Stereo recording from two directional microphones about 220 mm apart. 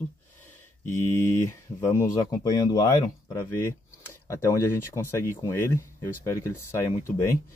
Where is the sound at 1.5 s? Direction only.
10° left (ahead or behind).